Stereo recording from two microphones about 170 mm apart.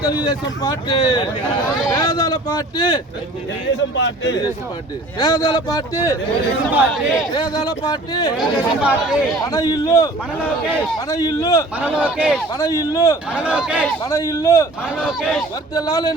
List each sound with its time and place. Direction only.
0.0 s a man's voice: 25° left (ahead or behind)
3.8 s speech: 90° left
5.2 s a man's voice: 20° left (ahead or behind)
6.7 s speech: centre (ahead or behind)
7.3 s a man's voice: 25° left (ahead or behind)
8.4 s speech: 5° right (ahead or behind)
9.4 s a man's voice: 20° left (ahead or behind)
11.1 s a man's voice: 20° left (ahead or behind)
11.8 s speech: 5° right (ahead or behind)
12.5 s a man's voice: 20° left (ahead or behind)
13.3 s speech: 5° right (ahead or behind)
14.0 s a man's voice: 20° left (ahead or behind)
15.7 s a man's voice: 20° left (ahead or behind)